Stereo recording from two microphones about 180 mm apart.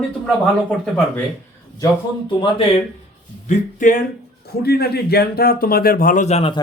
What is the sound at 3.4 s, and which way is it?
Speech, 45° left (ahead or behind).